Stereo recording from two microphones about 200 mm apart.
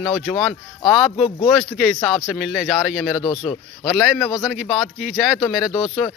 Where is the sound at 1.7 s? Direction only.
Centre (ahead or behind).